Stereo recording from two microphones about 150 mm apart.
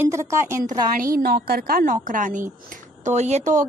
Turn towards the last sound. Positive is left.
turn(degrees=-50)  # may be behind; listen again after turning